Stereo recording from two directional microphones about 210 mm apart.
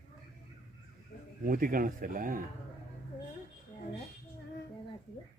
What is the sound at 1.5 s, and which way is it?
Speech, 40° right (ahead or behind).